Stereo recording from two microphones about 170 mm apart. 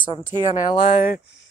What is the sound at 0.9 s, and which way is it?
Speech, 55° left (ahead or behind).